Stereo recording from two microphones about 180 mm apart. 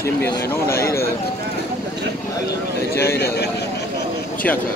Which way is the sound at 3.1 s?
65° left (ahead or behind).